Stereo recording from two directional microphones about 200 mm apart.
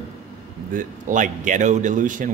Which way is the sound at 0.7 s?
40° right (ahead or behind).